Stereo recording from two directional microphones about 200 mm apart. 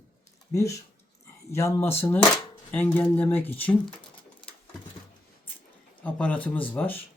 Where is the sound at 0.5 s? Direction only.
15° left (ahead or behind).